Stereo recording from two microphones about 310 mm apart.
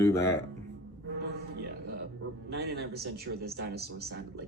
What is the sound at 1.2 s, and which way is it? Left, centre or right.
Music, right.